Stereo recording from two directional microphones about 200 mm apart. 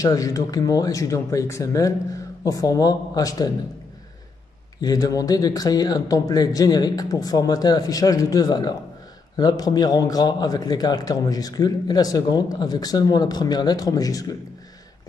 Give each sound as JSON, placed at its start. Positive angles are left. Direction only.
{"t": 0.0, "sound": "speech", "side_deg": 15}
{"t": 4.8, "sound": "a man's voice", "side_deg": 20}